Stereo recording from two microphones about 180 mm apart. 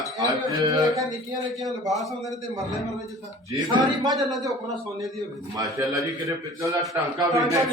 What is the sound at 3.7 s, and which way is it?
Speech, 20° right (ahead or behind).